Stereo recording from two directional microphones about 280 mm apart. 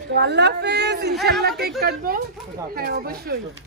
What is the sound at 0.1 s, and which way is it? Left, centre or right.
A woman's voice, right.